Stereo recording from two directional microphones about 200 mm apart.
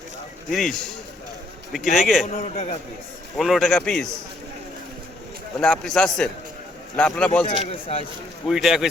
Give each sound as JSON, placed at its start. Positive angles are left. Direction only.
{"t": 0.5, "sound": "a man's voice", "side_deg": 0}
{"t": 2.4, "sound": "a man's voice", "side_deg": 30}
{"t": 3.3, "sound": "a man's voice", "side_deg": 0}
{"t": 5.5, "sound": "a man's voice", "side_deg": 5}
{"t": 8.4, "sound": "a man's voice", "side_deg": 0}